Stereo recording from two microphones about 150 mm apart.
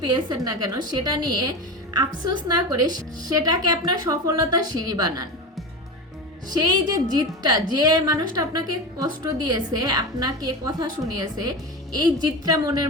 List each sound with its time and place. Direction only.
0.1 s a woman's voice: 25° right (ahead or behind)
6.6 s a woman's voice: 25° right (ahead or behind)